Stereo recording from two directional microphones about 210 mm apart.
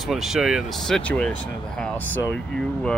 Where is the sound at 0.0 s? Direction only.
Centre (ahead or behind).